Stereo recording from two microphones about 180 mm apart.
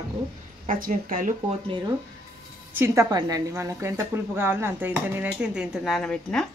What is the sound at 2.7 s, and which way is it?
A woman's voice, 15° right (ahead or behind).